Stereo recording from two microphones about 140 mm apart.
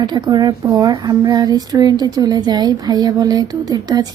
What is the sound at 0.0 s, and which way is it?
A woman's voice, 30° right (ahead or behind).